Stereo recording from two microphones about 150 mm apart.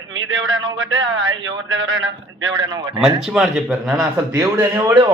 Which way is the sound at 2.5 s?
25° right (ahead or behind).